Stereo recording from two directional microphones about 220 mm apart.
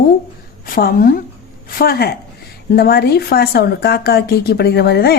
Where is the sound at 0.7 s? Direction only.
40° left (ahead or behind).